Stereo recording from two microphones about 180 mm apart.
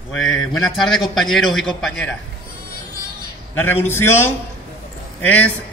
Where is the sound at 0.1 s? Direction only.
5° left (ahead or behind).